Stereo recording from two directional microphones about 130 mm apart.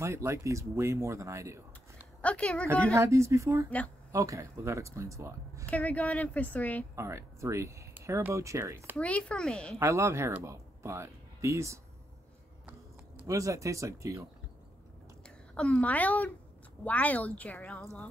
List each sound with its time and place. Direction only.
0.0 s speech: 20° right (ahead or behind)
2.2 s a woman's voice: 10° left (ahead or behind)
2.9 s speech: 20° right (ahead or behind)
5.7 s a woman's voice: 10° left (ahead or behind)
7.0 s speech: 20° right (ahead or behind)
8.9 s a woman's voice: 10° left (ahead or behind)
9.8 s speech: 20° right (ahead or behind)
13.3 s speech: 25° right (ahead or behind)
15.2 s a woman's voice: 10° left (ahead or behind)